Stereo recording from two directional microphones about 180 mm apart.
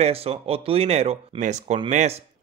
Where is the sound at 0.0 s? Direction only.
35° right (ahead or behind).